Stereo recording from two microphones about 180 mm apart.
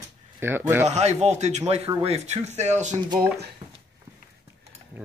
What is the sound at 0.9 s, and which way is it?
Speech, 40° right (ahead or behind).